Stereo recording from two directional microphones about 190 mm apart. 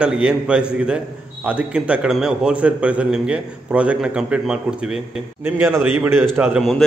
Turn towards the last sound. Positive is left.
turn(degrees=0)  # may be behind; listen again after turning